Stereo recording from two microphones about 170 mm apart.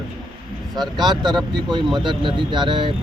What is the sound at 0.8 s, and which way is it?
Speech, 25° right (ahead or behind).